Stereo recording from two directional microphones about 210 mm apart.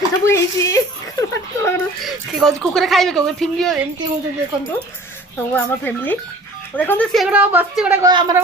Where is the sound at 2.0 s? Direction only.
Centre (ahead or behind).